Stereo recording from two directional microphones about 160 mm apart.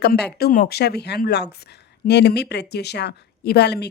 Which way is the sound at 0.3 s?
75° left (ahead or behind).